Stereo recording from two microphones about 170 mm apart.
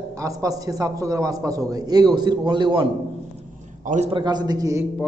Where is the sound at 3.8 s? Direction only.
45° right (ahead or behind).